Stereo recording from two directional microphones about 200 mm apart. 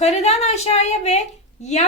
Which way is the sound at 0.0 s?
35° left (ahead or behind).